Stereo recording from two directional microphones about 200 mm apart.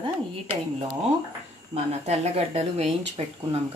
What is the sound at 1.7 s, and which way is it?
Speech, 35° right (ahead or behind).